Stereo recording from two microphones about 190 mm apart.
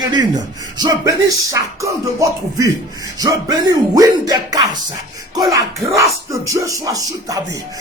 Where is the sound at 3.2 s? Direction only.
20° right (ahead or behind).